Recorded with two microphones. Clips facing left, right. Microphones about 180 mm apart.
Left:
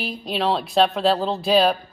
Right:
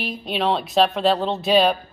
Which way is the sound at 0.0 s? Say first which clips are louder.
Even; centre (ahead or behind).